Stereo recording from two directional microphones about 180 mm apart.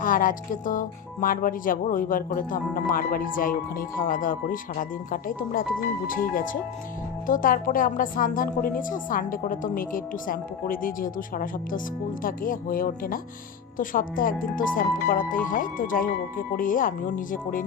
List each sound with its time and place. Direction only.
0.0 s speech: 50° left (ahead or behind)